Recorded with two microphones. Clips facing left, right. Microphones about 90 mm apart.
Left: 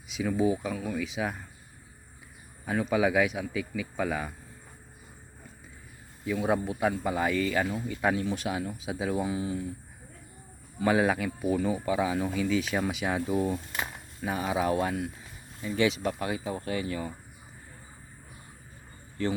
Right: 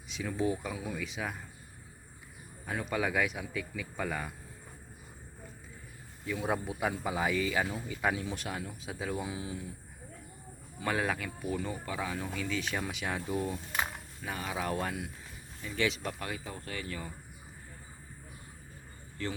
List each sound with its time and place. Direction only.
0.1 s speech: 5° left (ahead or behind)
0.7 s speech: 5° right (ahead or behind)
2.6 s speech: 5° left (ahead or behind)
6.2 s speech: 5° left (ahead or behind)
10.8 s speech: 10° left (ahead or behind)
11.9 s speech: 15° left (ahead or behind)
14.2 s speech: 20° left (ahead or behind)
14.7 s speech: 5° left (ahead or behind)
16.1 s speech: 20° left (ahead or behind)